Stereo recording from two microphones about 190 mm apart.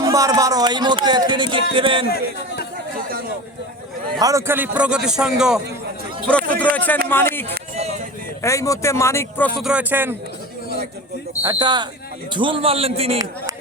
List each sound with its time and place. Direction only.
0.0 s speech: 15° right (ahead or behind)
2.0 s a man's voice: 55° left (ahead or behind)
4.2 s speech: 15° right (ahead or behind); by 7.0 s 10° left (ahead or behind)
7.8 s a sound: 35° right (ahead or behind)
8.4 s speech: 15° left (ahead or behind)
9.6 s speech: 5° right (ahead or behind)
11.4 s a man's voice: 20° right (ahead or behind)